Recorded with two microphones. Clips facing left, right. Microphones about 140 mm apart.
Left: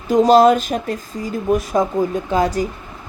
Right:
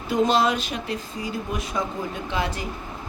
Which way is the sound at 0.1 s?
40° left (ahead or behind).